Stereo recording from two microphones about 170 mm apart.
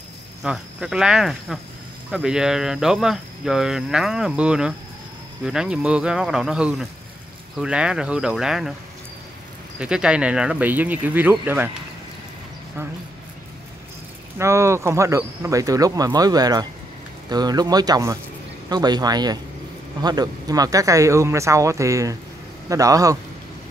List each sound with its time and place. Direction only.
0.4 s speech: 5° right (ahead or behind)
9.8 s speech: 5° right (ahead or behind)
14.4 s speech: 15° right (ahead or behind)